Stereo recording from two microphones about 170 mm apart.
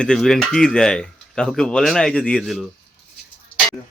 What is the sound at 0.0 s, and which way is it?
Speech, centre (ahead or behind).